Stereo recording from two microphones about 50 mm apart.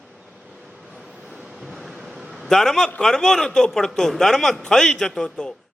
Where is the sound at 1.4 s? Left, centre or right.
Centre.